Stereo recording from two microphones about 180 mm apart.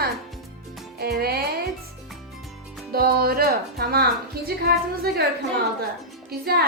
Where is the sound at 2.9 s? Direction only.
55° right (ahead or behind).